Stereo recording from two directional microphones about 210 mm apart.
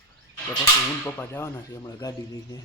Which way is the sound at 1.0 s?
10° left (ahead or behind).